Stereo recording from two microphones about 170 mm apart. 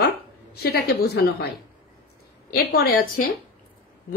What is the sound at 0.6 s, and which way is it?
Speech, 70° left (ahead or behind).